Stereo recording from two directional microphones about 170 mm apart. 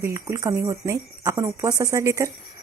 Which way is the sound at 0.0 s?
15° right (ahead or behind).